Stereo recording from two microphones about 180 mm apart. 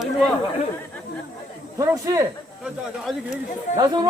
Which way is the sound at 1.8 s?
20° right (ahead or behind).